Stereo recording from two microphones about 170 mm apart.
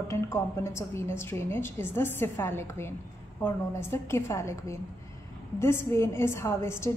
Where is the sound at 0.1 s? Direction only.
15° left (ahead or behind).